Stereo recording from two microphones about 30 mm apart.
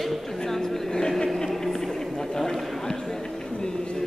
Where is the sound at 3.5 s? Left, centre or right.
Left.